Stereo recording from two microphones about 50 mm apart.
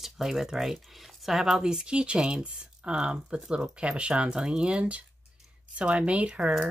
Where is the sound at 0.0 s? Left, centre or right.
Centre; by 6.5 s right.